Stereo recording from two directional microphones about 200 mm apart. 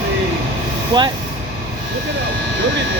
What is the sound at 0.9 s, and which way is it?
Speech, 20° right (ahead or behind).